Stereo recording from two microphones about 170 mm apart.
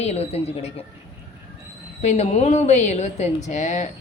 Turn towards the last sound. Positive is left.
turn(degrees=45)  # may be behind; listen again after turning